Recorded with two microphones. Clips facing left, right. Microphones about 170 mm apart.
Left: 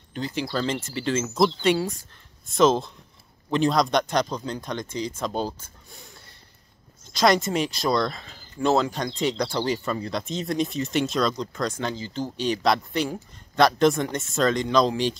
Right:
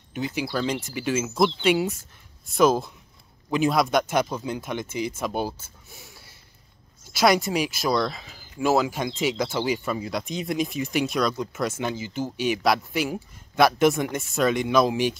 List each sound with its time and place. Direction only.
0.1 s speech: 10° right (ahead or behind)
12.6 s speech: 5° right (ahead or behind)
13.8 s speech: 15° right (ahead or behind)
14.1 s speech: centre (ahead or behind)